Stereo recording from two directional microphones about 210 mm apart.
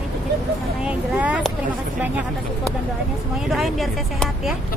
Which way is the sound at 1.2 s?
5° right (ahead or behind).